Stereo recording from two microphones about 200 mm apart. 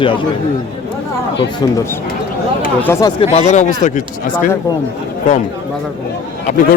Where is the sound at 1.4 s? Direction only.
15° left (ahead or behind).